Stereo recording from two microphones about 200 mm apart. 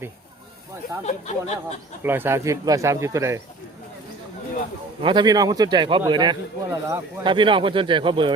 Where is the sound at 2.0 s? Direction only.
10° right (ahead or behind).